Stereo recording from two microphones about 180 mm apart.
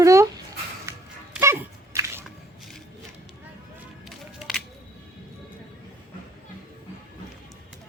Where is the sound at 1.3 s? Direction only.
10° right (ahead or behind).